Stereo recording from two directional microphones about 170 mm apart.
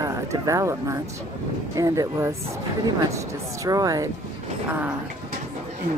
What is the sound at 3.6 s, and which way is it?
Speech, 20° right (ahead or behind).